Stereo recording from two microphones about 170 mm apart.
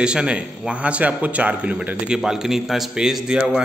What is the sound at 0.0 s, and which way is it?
A man's voice, 5° right (ahead or behind).